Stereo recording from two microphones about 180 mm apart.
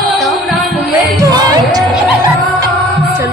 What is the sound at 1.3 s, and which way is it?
Music, 20° right (ahead or behind).